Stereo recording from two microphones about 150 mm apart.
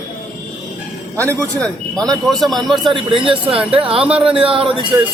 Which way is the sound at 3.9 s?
5° right (ahead or behind).